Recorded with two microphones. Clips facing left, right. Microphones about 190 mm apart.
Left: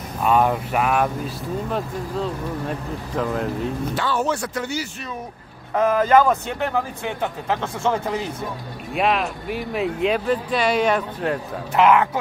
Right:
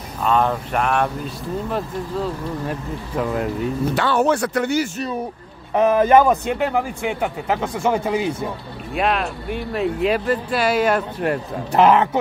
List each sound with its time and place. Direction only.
0.2 s speech: 10° left (ahead or behind)
3.9 s speech: 65° right (ahead or behind)
5.8 s speech: 20° right (ahead or behind)
8.9 s speech: centre (ahead or behind)
11.7 s a man's voice: 35° right (ahead or behind)